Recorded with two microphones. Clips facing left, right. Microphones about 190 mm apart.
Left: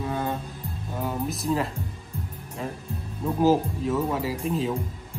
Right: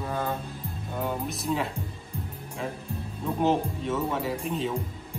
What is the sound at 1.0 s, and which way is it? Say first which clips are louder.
Speech: left 2 dB; centre (ahead or behind).